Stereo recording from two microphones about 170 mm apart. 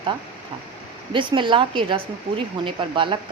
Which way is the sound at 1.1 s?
30° right (ahead or behind).